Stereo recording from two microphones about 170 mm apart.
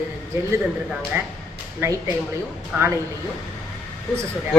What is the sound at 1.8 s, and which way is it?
Speech, 15° right (ahead or behind).